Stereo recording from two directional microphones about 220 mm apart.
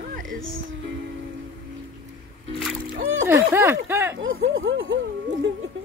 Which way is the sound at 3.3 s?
10° right (ahead or behind).